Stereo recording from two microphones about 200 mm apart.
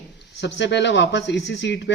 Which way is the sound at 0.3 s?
60° left (ahead or behind).